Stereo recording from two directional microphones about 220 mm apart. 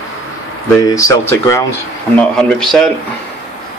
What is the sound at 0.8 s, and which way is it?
Speech, 15° left (ahead or behind).